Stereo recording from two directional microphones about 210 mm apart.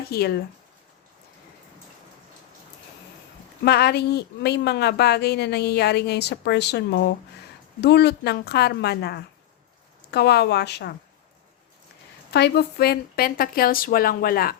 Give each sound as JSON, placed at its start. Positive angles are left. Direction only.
{"t": 0.1, "sound": "speech", "side_deg": 50}
{"t": 3.6, "sound": "speech", "side_deg": 50}
{"t": 12.3, "sound": "speech", "side_deg": 50}